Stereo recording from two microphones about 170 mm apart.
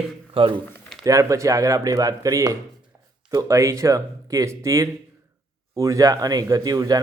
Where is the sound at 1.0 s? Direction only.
20° right (ahead or behind).